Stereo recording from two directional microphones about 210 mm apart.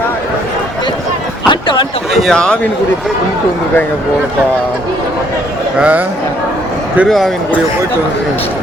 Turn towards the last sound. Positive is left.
turn(degrees=0)  # may be behind; listen again after turning